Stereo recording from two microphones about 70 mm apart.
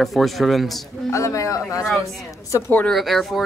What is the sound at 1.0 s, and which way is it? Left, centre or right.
Speech, left.